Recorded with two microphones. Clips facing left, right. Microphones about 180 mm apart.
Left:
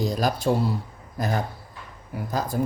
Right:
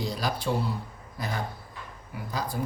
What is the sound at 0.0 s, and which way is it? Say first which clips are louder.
Speech: left 6 dB; 45° left (ahead or behind).